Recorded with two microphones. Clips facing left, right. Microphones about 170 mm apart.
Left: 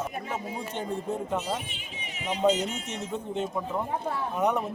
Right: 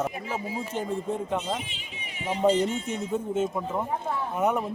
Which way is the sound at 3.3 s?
5° right (ahead or behind).